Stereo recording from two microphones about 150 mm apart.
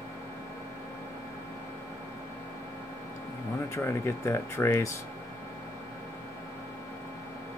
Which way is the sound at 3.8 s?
20° left (ahead or behind).